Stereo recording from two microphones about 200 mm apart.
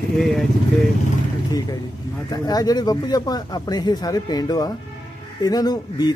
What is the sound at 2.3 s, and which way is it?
Speech, 20° left (ahead or behind).